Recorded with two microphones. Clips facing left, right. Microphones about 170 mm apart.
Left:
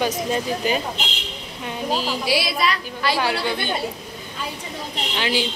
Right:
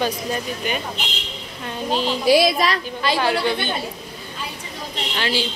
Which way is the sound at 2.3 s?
45° right (ahead or behind).